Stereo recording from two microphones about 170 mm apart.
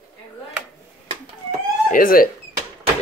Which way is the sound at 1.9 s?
55° left (ahead or behind).